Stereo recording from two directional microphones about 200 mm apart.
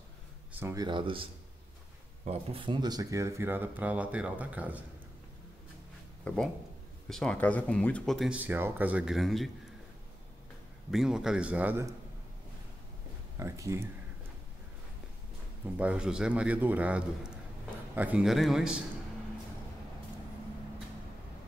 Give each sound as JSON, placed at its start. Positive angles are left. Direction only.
{"t": 0.5, "sound": "speech", "side_deg": -10}
{"t": 2.2, "sound": "speech", "side_deg": -30}
{"t": 6.2, "sound": "speech", "side_deg": 5}
{"t": 10.9, "sound": "speech", "side_deg": 0}
{"t": 13.4, "sound": "speech", "side_deg": -15}
{"t": 15.8, "sound": "speech", "side_deg": -5}